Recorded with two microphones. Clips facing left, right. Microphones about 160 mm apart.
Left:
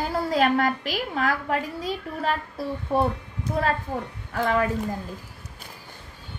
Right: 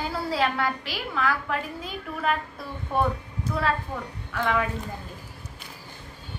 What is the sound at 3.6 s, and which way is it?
A woman's voice, 40° left (ahead or behind).